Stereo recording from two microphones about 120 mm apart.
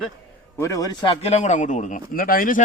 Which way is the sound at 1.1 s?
65° left (ahead or behind).